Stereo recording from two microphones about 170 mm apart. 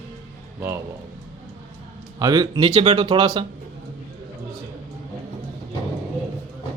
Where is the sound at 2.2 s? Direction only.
25° right (ahead or behind).